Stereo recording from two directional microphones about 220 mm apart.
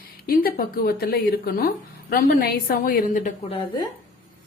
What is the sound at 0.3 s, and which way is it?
Speech, 40° left (ahead or behind).